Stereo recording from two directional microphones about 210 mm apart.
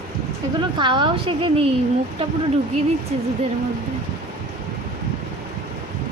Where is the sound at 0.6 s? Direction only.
20° right (ahead or behind).